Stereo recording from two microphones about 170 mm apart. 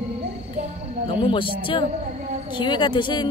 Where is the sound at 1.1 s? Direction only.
30° left (ahead or behind).